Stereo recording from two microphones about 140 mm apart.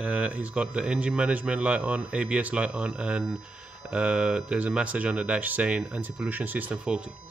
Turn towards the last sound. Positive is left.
turn(degrees=-10)  # may be behind; listen again after turning